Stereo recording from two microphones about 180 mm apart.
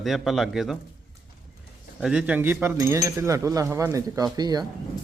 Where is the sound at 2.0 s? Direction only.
5° right (ahead or behind); by 4.7 s 20° right (ahead or behind).